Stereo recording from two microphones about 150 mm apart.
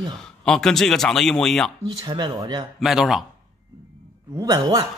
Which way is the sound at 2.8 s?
Centre (ahead or behind).